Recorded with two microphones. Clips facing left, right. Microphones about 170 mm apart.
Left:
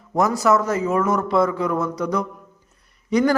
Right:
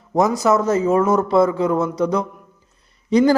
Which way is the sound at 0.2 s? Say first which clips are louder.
Right 2 dB; 20° right (ahead or behind).